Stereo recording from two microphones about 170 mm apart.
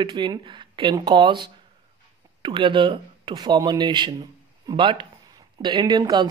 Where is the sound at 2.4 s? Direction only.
30° right (ahead or behind).